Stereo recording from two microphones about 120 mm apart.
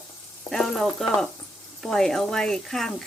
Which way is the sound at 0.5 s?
Centre (ahead or behind).